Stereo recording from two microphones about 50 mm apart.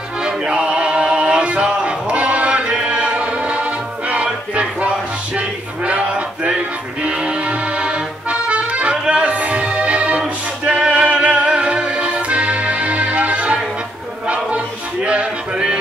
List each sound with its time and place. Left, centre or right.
0.2 s music: centre
14.2 s a sound: right
15.0 s male singing: centre